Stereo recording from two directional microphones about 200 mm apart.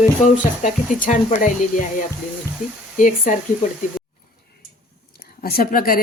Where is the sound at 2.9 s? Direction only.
40° left (ahead or behind).